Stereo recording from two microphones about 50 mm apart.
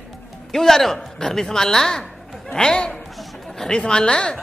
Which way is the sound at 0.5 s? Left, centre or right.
Centre.